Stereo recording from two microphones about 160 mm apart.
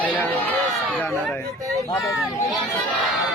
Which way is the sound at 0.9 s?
10° left (ahead or behind).